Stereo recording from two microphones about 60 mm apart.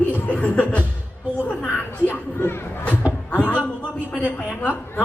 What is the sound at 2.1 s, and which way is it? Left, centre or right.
Speech, left.